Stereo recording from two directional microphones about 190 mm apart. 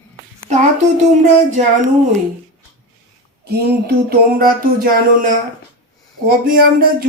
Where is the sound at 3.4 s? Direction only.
55° right (ahead or behind).